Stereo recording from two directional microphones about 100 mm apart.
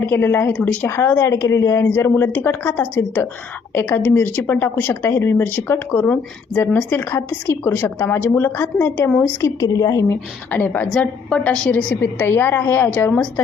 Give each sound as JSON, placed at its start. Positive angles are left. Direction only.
{"t": 0.0, "sound": "speech", "side_deg": 20}
{"t": 1.9, "sound": "speech", "side_deg": 20}
{"t": 9.6, "sound": "a woman's voice", "side_deg": 35}
{"t": 10.1, "sound": "a woman's voice", "side_deg": 15}
{"t": 11.9, "sound": "speech", "side_deg": 25}